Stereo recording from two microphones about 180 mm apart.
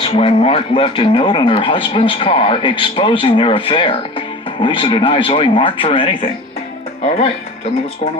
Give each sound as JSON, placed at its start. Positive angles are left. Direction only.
{"t": 0.0, "sound": "speech", "side_deg": 30}